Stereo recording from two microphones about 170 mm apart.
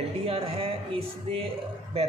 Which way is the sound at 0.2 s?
35° right (ahead or behind).